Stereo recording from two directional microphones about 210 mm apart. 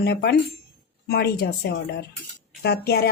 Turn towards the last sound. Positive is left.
turn(degrees=50)  # may be behind; listen again after turning